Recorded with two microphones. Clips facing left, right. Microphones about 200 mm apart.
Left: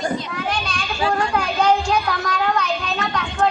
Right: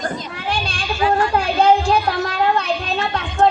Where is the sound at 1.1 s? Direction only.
30° right (ahead or behind).